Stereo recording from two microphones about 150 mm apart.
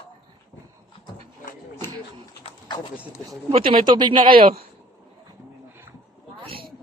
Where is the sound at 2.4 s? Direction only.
30° left (ahead or behind).